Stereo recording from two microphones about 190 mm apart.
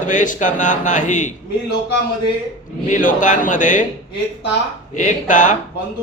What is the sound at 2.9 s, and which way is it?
Speech, 45° left (ahead or behind).